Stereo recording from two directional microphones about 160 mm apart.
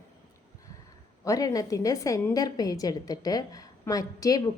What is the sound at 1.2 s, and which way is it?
A woman's voice, 20° left (ahead or behind).